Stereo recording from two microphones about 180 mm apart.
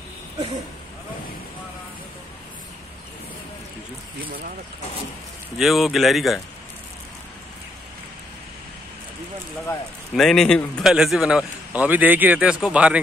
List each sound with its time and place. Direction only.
4.2 s speech: 55° right (ahead or behind)
5.6 s a man's voice: centre (ahead or behind)
10.1 s a man's voice: centre (ahead or behind)